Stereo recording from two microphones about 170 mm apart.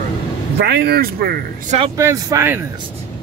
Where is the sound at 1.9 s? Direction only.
20° right (ahead or behind).